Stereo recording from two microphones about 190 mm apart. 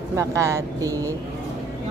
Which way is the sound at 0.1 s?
15° right (ahead or behind).